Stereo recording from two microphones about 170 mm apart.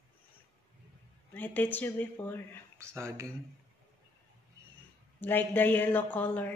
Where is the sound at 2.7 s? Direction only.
15° right (ahead or behind).